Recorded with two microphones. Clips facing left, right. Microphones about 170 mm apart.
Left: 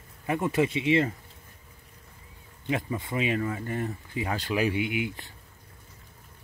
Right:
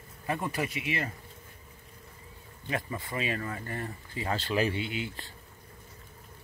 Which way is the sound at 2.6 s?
20° left (ahead or behind).